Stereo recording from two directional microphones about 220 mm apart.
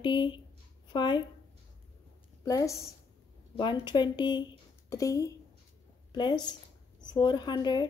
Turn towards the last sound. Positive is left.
turn(degrees=20)  # may be behind; listen again after turning